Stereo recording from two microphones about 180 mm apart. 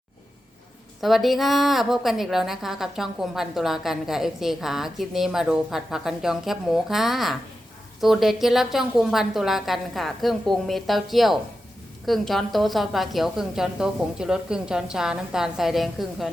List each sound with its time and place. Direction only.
1.0 s a woman's voice: centre (ahead or behind)